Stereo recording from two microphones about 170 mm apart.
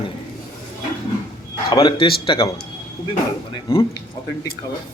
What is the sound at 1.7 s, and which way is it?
Speech, 25° left (ahead or behind).